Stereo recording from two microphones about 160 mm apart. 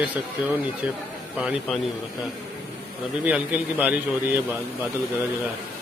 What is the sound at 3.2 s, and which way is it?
A man's voice, 10° right (ahead or behind).